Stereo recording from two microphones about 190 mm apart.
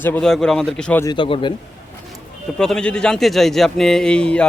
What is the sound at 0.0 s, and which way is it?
A man's voice, 5° left (ahead or behind).